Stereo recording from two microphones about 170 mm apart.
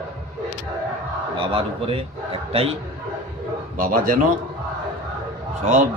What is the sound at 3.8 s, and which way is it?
Speech, 55° right (ahead or behind).